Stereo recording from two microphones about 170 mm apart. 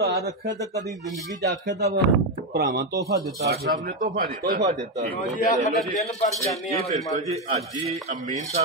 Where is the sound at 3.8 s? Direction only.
60° right (ahead or behind).